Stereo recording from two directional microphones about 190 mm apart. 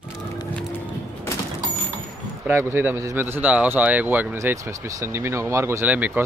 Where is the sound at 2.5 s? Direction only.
10° right (ahead or behind).